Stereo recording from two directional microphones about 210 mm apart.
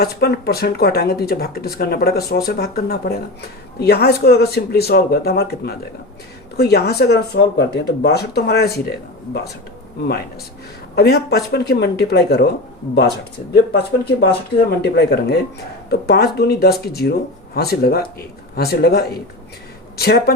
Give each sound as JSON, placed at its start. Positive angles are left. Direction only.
{"t": 0.0, "sound": "speech", "side_deg": 50}
{"t": 10.9, "sound": "speech", "side_deg": 50}